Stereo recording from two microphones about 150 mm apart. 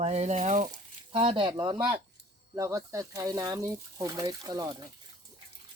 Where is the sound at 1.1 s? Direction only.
35° right (ahead or behind).